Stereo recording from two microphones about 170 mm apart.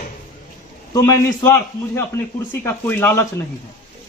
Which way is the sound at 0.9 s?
20° left (ahead or behind).